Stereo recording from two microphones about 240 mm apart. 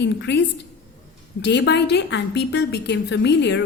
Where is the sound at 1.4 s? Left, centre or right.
Left.